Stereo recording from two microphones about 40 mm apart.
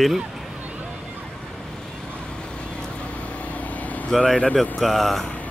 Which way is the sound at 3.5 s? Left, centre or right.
Left.